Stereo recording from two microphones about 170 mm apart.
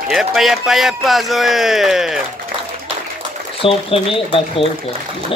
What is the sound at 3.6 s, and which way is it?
Speech, 30° left (ahead or behind).